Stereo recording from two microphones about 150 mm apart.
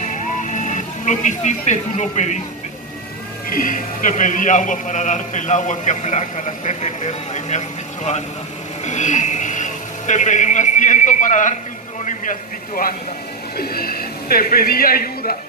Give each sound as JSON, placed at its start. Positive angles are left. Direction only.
{"t": 0.0, "sound": "music", "side_deg": 55}
{"t": 1.7, "sound": "a man's voice", "side_deg": 50}
{"t": 3.4, "sound": "a man's voice", "side_deg": 65}
{"t": 13.6, "sound": "a man's voice", "side_deg": 90}